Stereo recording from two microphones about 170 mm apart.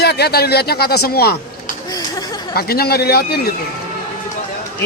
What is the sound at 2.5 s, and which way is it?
Speech, 65° left (ahead or behind).